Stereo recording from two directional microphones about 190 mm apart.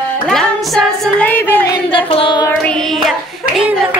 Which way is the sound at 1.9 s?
30° left (ahead or behind).